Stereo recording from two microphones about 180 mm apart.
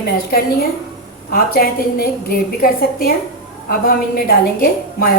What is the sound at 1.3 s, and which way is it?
Speech, 55° left (ahead or behind).